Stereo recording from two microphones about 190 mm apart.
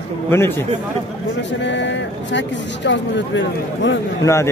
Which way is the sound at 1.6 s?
70° left (ahead or behind).